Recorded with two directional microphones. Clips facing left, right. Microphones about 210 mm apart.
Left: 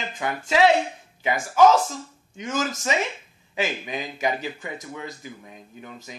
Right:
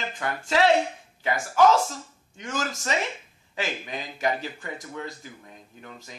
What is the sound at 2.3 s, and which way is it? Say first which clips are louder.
Speech: left 4 dB; 20° left (ahead or behind).